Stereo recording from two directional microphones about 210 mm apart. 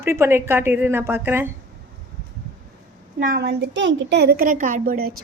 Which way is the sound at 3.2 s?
50° right (ahead or behind).